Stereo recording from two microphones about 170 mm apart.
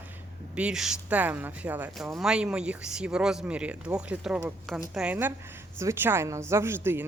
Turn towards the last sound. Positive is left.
turn(degrees=-15)  # may be behind; listen again after turning